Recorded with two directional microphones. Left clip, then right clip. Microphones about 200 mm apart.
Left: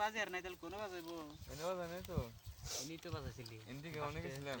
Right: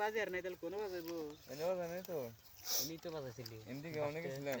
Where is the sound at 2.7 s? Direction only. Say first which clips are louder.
Right 4 dB; 30° left (ahead or behind).